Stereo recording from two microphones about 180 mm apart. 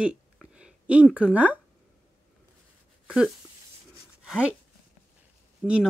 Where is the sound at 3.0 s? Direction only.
5° right (ahead or behind).